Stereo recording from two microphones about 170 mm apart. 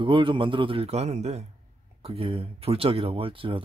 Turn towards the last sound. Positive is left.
turn(degrees=-30)  # may be behind; listen again after turning